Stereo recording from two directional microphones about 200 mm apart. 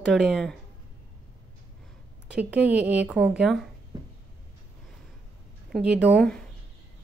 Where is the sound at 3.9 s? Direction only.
20° right (ahead or behind).